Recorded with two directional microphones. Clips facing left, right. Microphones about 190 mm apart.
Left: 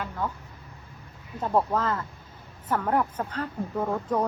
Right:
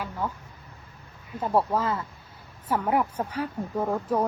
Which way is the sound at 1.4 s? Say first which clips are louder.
Even; 10° right (ahead or behind).